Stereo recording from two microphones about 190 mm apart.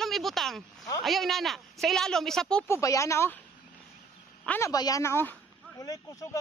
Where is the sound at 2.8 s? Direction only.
15° left (ahead or behind).